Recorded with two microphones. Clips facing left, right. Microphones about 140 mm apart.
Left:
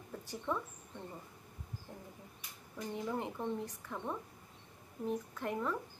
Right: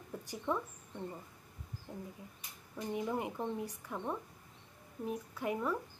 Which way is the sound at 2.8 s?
10° right (ahead or behind).